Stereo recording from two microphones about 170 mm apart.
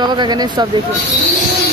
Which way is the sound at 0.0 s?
25° right (ahead or behind).